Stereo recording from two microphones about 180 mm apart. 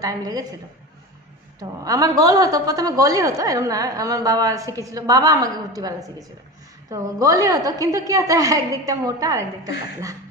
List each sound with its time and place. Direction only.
0.0 s a woman's voice: 20° right (ahead or behind)
1.6 s a woman's voice: 20° right (ahead or behind)